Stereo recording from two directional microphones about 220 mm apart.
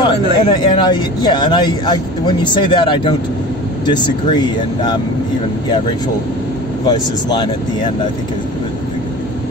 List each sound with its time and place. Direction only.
0.0 s speech: 20° left (ahead or behind)
6.9 s speech: 20° left (ahead or behind)